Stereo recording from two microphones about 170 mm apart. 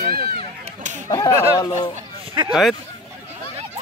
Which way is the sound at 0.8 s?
45° right (ahead or behind).